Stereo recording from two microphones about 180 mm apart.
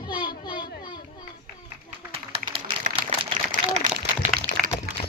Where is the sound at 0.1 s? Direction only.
25° left (ahead or behind).